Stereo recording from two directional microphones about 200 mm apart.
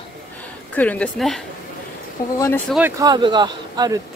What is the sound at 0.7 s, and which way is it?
Speech, 5° left (ahead or behind).